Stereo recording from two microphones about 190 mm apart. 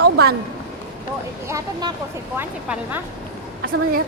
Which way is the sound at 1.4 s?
15° right (ahead or behind).